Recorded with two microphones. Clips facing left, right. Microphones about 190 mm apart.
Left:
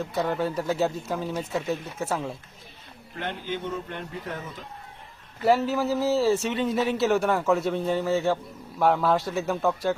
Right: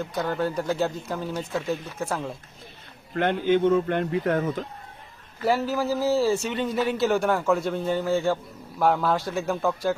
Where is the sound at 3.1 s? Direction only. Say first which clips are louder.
Right 11 dB; 60° right (ahead or behind).